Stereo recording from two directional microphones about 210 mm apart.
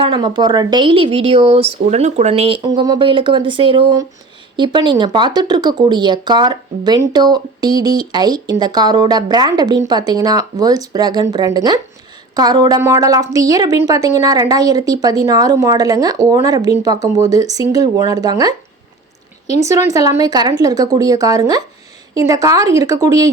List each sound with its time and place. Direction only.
0.0 s a woman's voice: 20° right (ahead or behind)
19.6 s a woman's voice: 15° right (ahead or behind)